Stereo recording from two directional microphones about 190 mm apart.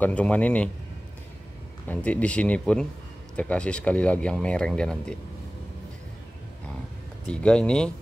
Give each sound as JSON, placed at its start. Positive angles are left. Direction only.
{"t": 0.0, "sound": "speech", "side_deg": 5}
{"t": 1.9, "sound": "speech", "side_deg": 5}
{"t": 7.2, "sound": "speech", "side_deg": 5}